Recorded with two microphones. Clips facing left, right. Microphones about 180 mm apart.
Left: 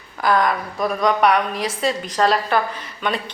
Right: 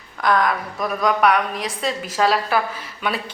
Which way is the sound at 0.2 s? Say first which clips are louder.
Left 1 dB; centre (ahead or behind).